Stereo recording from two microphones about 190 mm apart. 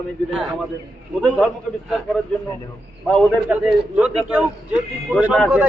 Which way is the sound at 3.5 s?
5° right (ahead or behind).